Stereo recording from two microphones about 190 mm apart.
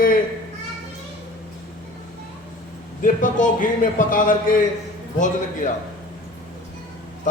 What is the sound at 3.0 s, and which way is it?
A man's voice, 45° left (ahead or behind).